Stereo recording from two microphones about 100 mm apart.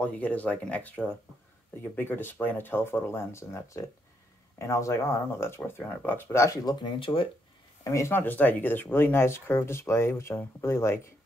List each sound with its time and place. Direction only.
0.0 s speech: 15° left (ahead or behind); by 7.2 s 55° left (ahead or behind)
7.8 s speech: 30° left (ahead or behind)